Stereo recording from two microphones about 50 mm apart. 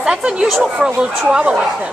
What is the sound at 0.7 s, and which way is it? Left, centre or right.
Speech, centre.